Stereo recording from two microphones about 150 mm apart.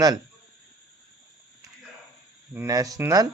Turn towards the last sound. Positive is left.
turn(degrees=-20)  # may be behind; listen again after turning